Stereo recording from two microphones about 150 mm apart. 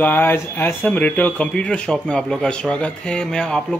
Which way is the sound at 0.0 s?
15° left (ahead or behind).